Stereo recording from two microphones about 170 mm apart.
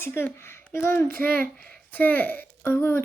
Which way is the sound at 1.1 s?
60° right (ahead or behind).